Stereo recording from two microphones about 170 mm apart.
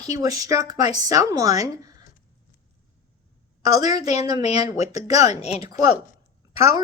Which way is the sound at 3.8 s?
20° right (ahead or behind).